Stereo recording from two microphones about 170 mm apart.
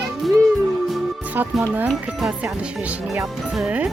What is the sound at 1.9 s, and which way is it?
Speech, centre (ahead or behind).